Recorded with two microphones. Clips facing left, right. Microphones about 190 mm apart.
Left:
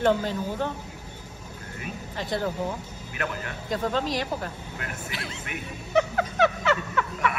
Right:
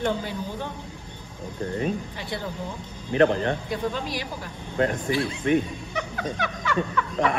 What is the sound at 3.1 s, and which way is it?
Speech, 30° right (ahead or behind).